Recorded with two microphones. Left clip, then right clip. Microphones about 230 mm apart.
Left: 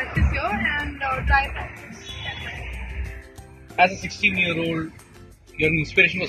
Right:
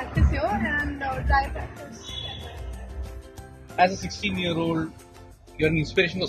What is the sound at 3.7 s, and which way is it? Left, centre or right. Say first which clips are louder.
A man's voice: left 2 dB; centre.